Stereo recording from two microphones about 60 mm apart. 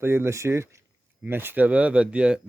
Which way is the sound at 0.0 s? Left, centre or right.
Right.